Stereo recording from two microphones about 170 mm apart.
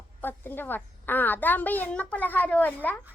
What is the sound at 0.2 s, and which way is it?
A child's voice, 10° left (ahead or behind).